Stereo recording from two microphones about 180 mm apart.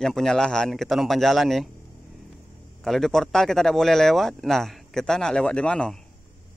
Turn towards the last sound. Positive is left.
turn(degrees=5)  # may be behind; listen again after turning